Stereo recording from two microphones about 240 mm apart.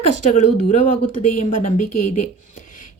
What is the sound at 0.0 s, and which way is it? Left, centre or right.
Speech, left.